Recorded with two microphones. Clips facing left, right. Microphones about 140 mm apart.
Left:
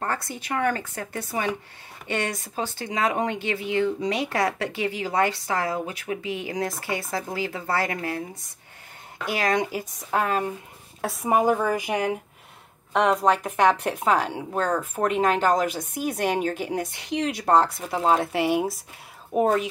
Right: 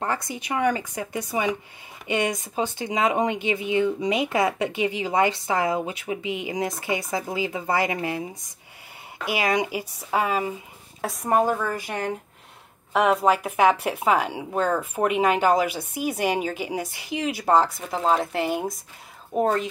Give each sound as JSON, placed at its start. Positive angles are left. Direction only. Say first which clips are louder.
{"t": 0.0, "sound": "speech", "louder": "right 2 dB", "side_deg": -15}
{"t": 12.9, "sound": "speech", "louder": "right 1 dB", "side_deg": -5}